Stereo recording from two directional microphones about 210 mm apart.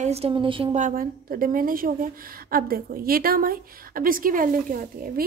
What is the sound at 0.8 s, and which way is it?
A woman's voice, 40° right (ahead or behind).